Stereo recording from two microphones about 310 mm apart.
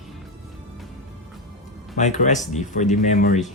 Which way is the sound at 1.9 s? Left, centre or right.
Left.